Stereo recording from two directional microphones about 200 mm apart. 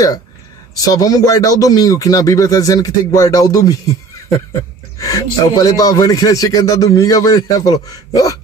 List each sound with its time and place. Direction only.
0.7 s a man's voice: 20° left (ahead or behind)
4.9 s a man's voice: 15° left (ahead or behind)